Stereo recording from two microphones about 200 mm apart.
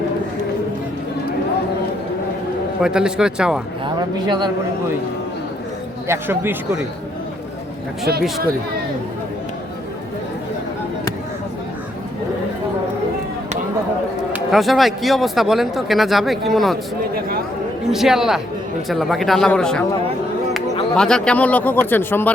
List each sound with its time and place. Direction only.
2.8 s speech: 5° right (ahead or behind)
3.8 s speech: 20° right (ahead or behind)
6.1 s speech: 10° right (ahead or behind)
14.3 s speech: centre (ahead or behind)
17.9 s speech: centre (ahead or behind)